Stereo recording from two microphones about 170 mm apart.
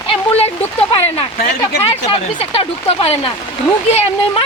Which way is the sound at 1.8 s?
35° left (ahead or behind).